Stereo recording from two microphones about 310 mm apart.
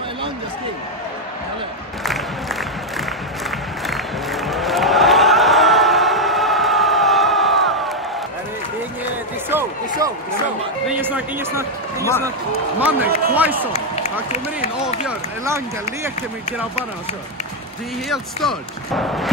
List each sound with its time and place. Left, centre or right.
3.8 s music: centre
9.5 s a sound: centre
12.8 s speech: centre
13.7 s speech: left
15.0 s speech: centre
18.1 s speech: centre